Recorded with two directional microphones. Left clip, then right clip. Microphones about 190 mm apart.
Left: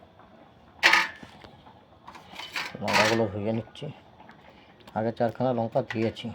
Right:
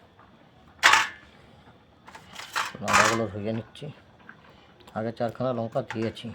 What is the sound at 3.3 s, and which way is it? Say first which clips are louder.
Speech: left 2 dB; centre (ahead or behind).